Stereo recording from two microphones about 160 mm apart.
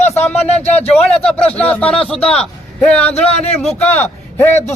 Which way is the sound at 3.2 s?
40° left (ahead or behind).